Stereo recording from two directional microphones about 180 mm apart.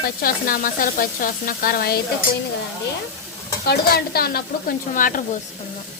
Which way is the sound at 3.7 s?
60° left (ahead or behind).